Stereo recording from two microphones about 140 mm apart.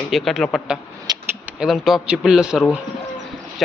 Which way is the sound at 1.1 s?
30° right (ahead or behind).